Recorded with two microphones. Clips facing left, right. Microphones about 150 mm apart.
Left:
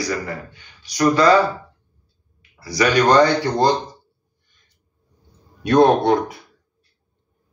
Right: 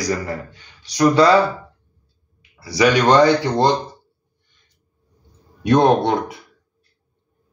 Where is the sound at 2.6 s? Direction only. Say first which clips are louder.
Right 1 dB; 25° right (ahead or behind).